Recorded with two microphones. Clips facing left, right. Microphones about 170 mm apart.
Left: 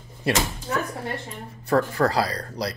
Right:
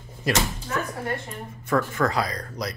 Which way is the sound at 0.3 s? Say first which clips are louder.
Left 1 dB; 30° left (ahead or behind).